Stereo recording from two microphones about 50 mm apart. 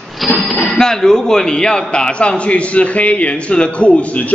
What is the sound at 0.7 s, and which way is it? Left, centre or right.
A man's voice, centre.